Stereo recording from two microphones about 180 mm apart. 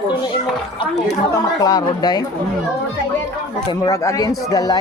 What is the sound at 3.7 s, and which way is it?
Speech, 20° left (ahead or behind).